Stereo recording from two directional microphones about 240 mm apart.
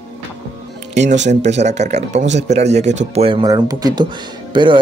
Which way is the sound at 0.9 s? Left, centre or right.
Right.